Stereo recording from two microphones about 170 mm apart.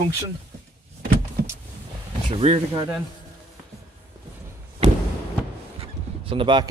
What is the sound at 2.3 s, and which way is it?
Speech, 30° right (ahead or behind).